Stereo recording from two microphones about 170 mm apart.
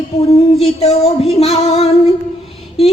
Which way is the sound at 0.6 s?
35° left (ahead or behind).